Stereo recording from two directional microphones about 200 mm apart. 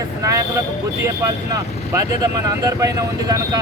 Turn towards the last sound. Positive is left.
turn(degrees=-20)  # may be behind; listen again after turning